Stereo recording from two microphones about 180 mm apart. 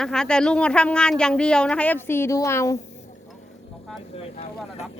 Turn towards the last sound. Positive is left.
turn(degrees=40)  # may be behind; listen again after turning